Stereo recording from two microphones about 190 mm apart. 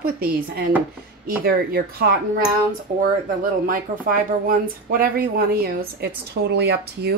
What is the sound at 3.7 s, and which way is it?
Speech, 45° right (ahead or behind).